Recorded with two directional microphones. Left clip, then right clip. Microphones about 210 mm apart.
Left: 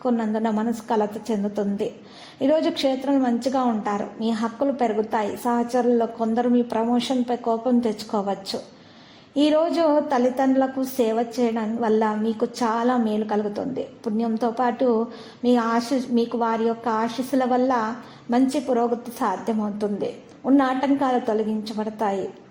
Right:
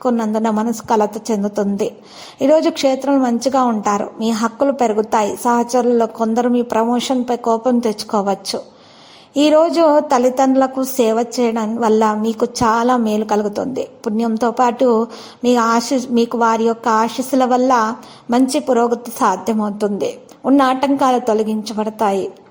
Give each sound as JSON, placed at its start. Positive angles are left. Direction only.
{"t": 0.0, "sound": "a woman's voice", "side_deg": -25}